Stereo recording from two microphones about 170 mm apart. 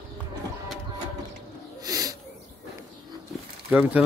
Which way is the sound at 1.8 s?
20° right (ahead or behind).